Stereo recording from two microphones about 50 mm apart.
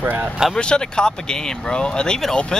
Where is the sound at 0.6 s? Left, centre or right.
Centre.